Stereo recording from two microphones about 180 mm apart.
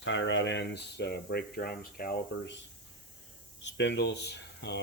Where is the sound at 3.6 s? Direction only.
80° left.